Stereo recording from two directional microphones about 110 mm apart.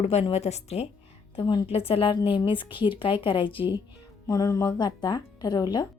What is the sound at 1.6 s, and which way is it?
A woman's voice, 65° left (ahead or behind).